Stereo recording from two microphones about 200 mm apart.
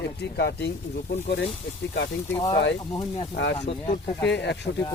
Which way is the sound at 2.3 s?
15° left (ahead or behind).